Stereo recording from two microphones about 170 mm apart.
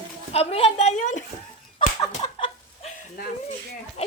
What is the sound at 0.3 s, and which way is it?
Speech, 35° left (ahead or behind).